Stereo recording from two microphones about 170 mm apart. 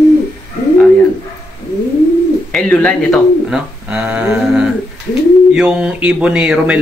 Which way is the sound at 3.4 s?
5° right (ahead or behind).